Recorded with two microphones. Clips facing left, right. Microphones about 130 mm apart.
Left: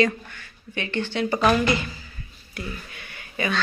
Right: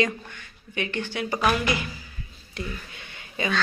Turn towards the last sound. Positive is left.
turn(degrees=-20)  # may be behind; listen again after turning